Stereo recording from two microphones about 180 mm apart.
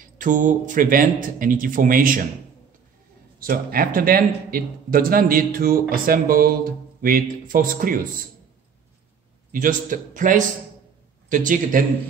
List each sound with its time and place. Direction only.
0.0 s a man's voice: 45° right (ahead or behind)
3.3 s a man's voice: 55° right (ahead or behind)
9.5 s a man's voice: 50° right (ahead or behind)